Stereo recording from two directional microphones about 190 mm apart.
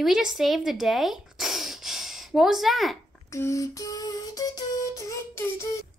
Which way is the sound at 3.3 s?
15° left (ahead or behind).